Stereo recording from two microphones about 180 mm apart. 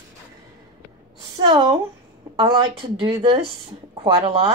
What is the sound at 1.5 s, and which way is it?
Speech, 20° right (ahead or behind).